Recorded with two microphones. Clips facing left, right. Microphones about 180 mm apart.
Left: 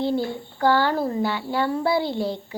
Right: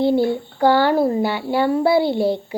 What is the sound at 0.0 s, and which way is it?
A child's voice, 65° right (ahead or behind).